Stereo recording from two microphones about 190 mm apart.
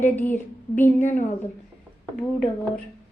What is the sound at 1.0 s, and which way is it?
Speech, 40° left (ahead or behind).